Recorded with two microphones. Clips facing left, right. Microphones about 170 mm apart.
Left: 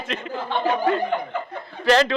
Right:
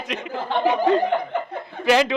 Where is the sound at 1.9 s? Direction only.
10° right (ahead or behind).